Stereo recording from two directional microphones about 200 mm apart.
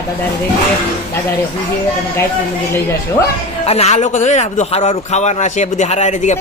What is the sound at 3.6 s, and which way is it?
A man's voice, 30° left (ahead or behind).